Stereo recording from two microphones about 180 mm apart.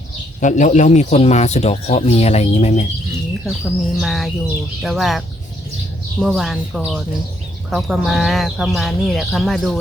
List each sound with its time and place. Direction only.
0.3 s speech: 45° left (ahead or behind)
3.4 s speech: centre (ahead or behind)
6.2 s speech: centre (ahead or behind)